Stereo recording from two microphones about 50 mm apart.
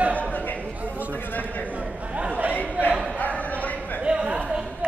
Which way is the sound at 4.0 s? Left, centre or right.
Centre.